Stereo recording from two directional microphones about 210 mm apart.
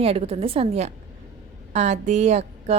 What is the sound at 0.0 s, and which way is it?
A woman's voice, 30° right (ahead or behind).